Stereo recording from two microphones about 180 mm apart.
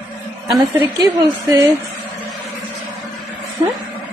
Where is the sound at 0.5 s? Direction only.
20° right (ahead or behind).